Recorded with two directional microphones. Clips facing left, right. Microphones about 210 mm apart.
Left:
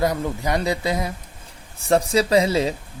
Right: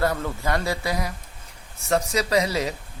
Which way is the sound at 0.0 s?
15° left (ahead or behind).